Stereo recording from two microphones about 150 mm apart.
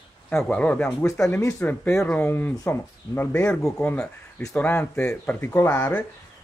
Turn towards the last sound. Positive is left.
turn(degrees=15)  # may be behind; listen again after turning